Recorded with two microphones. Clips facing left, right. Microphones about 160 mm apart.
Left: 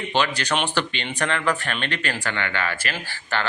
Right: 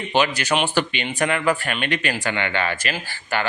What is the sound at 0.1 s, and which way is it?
Speech, 10° right (ahead or behind).